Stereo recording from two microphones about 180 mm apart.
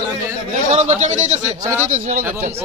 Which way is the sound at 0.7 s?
40° right (ahead or behind).